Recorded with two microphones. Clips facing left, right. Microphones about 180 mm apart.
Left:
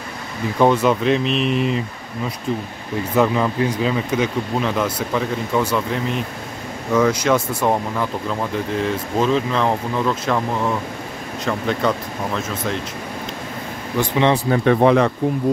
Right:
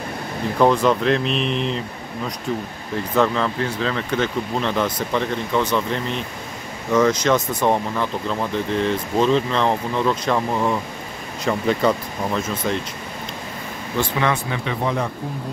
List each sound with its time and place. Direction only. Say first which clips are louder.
0.6 s speech: left 1 dB; centre (ahead or behind)
3.2 s speech: left 2 dB; 10° left (ahead or behind)
13.9 s speech: left 4 dB; 20° left (ahead or behind)
14.6 s speech: left 9 dB; 60° left (ahead or behind)